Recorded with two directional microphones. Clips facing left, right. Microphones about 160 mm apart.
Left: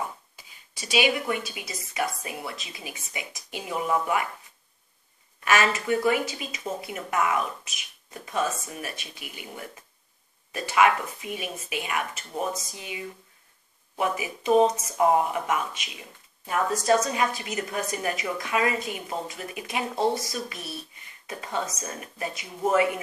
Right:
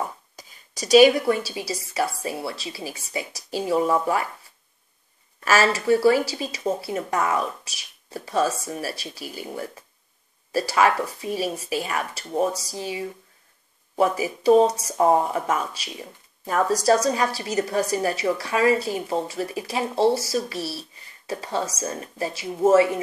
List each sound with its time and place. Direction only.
0.4 s speech: 40° right (ahead or behind)
5.4 s speech: 35° right (ahead or behind)